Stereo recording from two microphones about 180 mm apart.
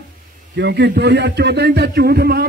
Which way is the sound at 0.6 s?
70° right (ahead or behind).